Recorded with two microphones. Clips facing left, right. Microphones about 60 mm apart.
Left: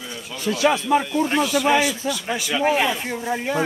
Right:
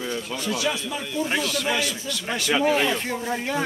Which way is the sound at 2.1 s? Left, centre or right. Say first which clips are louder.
Even; centre.